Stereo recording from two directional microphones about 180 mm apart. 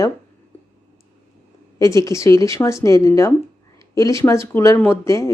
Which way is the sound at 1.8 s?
15° left (ahead or behind).